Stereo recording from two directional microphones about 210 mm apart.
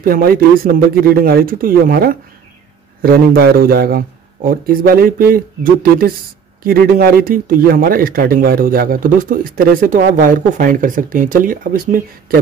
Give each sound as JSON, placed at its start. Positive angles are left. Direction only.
{"t": 0.0, "sound": "speech", "side_deg": -45}